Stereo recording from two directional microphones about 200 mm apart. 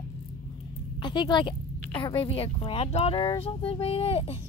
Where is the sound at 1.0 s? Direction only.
25° left (ahead or behind).